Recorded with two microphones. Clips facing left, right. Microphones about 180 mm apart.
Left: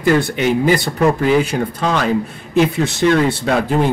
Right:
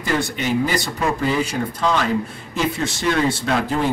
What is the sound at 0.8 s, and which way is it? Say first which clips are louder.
Speech: left 6 dB; 60° left (ahead or behind).